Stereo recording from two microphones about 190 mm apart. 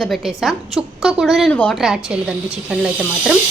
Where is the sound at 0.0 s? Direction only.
Centre (ahead or behind).